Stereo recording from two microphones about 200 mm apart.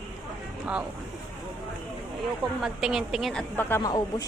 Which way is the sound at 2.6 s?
Centre (ahead or behind).